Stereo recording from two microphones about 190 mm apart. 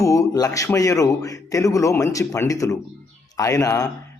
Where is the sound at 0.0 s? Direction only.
15° left (ahead or behind).